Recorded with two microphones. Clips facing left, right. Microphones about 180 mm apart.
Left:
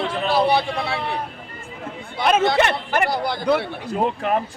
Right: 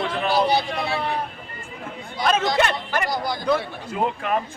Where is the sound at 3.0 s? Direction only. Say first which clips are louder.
Left 4 dB; 60° left (ahead or behind).